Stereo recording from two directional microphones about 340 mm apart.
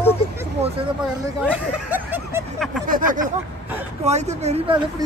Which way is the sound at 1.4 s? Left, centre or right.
Centre.